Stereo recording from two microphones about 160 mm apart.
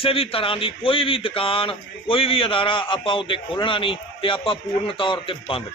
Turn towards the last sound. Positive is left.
turn(degrees=35)  # may be behind; listen again after turning